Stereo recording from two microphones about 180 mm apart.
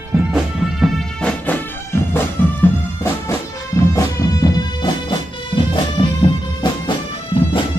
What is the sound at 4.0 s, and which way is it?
Music, 20° left (ahead or behind).